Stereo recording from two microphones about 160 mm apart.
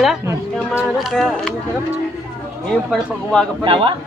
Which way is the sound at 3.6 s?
30° right (ahead or behind).